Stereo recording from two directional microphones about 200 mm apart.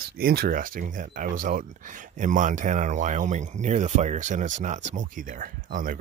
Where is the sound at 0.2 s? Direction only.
50° right (ahead or behind).